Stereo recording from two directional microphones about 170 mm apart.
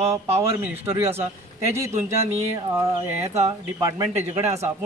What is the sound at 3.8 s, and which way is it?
Speech, 20° right (ahead or behind).